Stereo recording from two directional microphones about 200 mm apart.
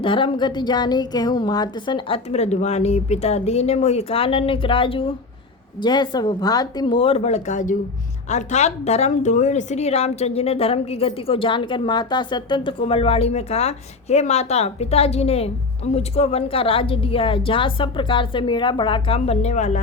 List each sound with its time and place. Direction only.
0.0 s a woman's voice: 25° left (ahead or behind)